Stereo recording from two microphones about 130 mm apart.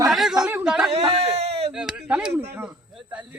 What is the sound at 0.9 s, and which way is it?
Speech, 50° right (ahead or behind).